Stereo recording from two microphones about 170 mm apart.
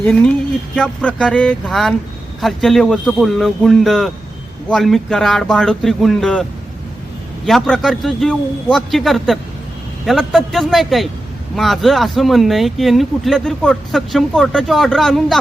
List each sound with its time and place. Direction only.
0.8 s speech: 5° left (ahead or behind)
7.4 s speech: centre (ahead or behind)